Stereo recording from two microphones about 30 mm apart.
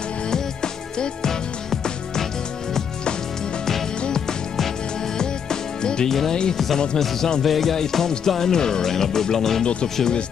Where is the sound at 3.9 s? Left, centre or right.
Left.